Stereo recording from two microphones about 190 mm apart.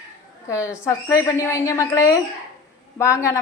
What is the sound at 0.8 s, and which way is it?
Speech, 15° left (ahead or behind).